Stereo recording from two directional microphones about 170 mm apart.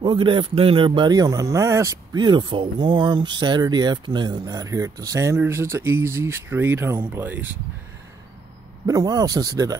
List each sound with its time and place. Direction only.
0.0 s speech: 30° right (ahead or behind); by 7.5 s 10° right (ahead or behind)
8.8 s speech: 20° right (ahead or behind)